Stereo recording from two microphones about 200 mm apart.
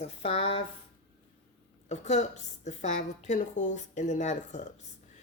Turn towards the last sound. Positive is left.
turn(degrees=35)  # may be behind; listen again after turning